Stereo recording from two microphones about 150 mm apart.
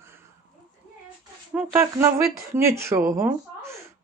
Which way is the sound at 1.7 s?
20° right (ahead or behind).